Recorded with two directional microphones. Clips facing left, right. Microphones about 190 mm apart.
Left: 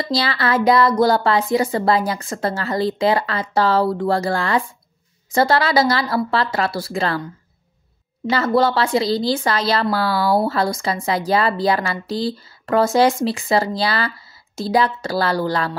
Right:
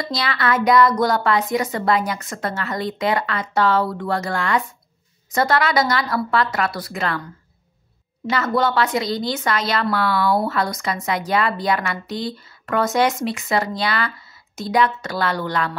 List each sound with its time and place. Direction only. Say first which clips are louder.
0.0 s a woman's voice: left 3 dB; 30° left (ahead or behind)
8.3 s a woman's voice: left 3 dB; 30° left (ahead or behind)